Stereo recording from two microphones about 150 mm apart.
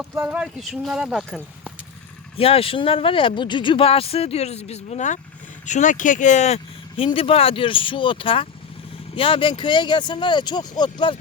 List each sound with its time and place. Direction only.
0.1 s speech: 15° right (ahead or behind)
2.4 s speech: 40° left (ahead or behind)